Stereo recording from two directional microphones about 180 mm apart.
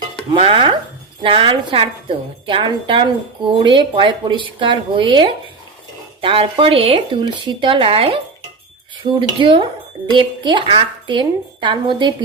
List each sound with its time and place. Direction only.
0.3 s a woman's voice: 30° right (ahead or behind)